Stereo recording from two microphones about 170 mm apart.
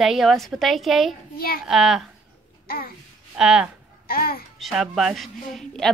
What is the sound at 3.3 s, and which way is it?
Speech, 5° right (ahead or behind).